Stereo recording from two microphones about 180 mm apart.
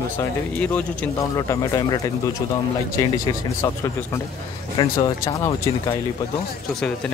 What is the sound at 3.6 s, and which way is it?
Speech, 15° left (ahead or behind).